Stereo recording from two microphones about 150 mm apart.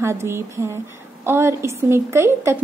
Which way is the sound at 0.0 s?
15° right (ahead or behind).